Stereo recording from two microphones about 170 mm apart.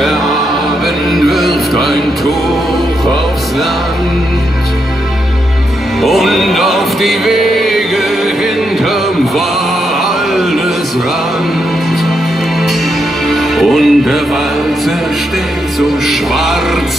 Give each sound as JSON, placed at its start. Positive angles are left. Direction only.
{"t": 1.1, "sound": "music", "side_deg": 0}
{"t": 6.0, "sound": "music", "side_deg": 0}
{"t": 13.3, "sound": "music", "side_deg": 0}
{"t": 16.1, "sound": "music", "side_deg": 0}